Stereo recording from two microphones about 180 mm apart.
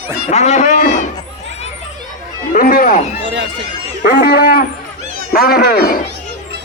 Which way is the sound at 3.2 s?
90° right.